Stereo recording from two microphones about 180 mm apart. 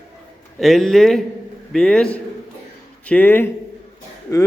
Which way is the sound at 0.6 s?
Centre (ahead or behind).